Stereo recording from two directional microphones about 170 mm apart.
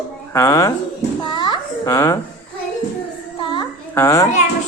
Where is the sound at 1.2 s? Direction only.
25° left (ahead or behind).